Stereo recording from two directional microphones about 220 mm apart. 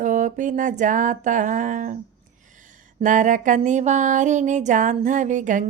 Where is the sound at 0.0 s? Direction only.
35° right (ahead or behind).